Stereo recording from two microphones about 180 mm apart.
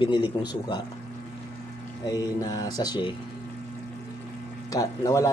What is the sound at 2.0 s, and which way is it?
Speech, 20° left (ahead or behind).